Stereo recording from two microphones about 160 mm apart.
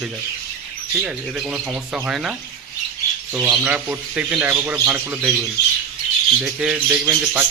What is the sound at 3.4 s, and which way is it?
Speech, 10° right (ahead or behind).